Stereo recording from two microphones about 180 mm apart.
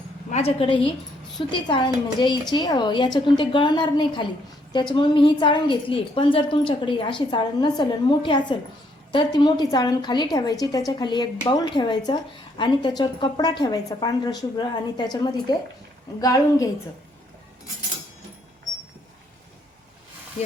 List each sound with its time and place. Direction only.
0.3 s a woman's voice: 35° left (ahead or behind); by 16.6 s 20° left (ahead or behind)